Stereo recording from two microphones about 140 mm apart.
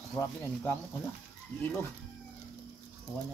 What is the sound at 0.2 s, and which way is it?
Speech, 15° left (ahead or behind).